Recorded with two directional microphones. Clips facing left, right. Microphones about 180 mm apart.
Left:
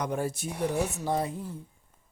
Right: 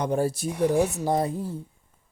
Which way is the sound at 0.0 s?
30° right (ahead or behind).